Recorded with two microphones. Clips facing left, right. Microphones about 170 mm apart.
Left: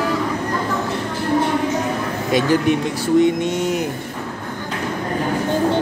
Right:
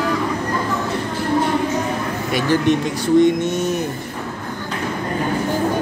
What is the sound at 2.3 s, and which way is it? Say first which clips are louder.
Speech: left 1 dB; 15° left (ahead or behind).